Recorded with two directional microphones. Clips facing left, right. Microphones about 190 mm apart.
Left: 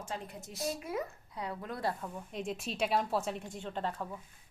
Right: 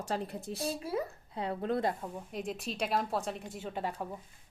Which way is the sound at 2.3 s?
Centre (ahead or behind).